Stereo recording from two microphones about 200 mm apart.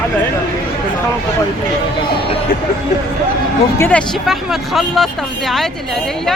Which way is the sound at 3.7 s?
5° left (ahead or behind).